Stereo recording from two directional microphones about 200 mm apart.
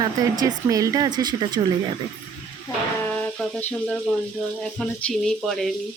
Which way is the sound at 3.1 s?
5° left (ahead or behind).